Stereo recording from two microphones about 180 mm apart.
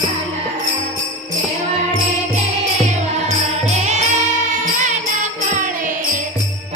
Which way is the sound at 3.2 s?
40° right (ahead or behind).